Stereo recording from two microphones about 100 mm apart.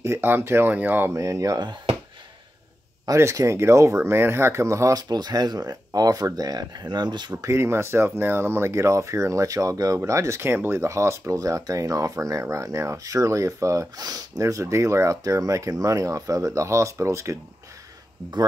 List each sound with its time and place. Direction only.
0.0 s speech: 25° right (ahead or behind)
1.1 s speech: 35° right (ahead or behind)
3.1 s speech: 30° right (ahead or behind); by 7.3 s 45° right (ahead or behind)
7.4 s speech: 25° right (ahead or behind)